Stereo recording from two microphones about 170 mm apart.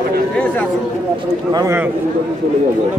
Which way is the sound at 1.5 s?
25° right (ahead or behind).